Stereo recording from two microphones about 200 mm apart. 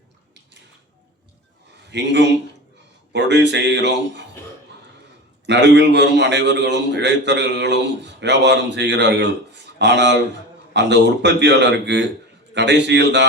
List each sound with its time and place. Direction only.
1.9 s a man's voice: 60° right (ahead or behind)
5.5 s a man's voice: 60° right (ahead or behind)